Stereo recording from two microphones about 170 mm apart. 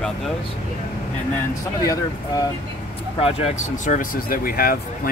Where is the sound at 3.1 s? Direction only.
35° left (ahead or behind).